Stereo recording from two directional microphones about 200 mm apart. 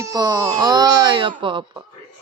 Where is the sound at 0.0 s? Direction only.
20° right (ahead or behind).